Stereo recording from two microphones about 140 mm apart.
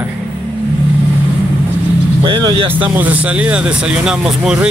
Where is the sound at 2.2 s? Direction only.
35° right (ahead or behind).